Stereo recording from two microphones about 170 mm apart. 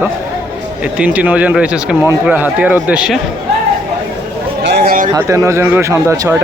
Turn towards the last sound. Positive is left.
turn(degrees=-15)  # may be behind; listen again after turning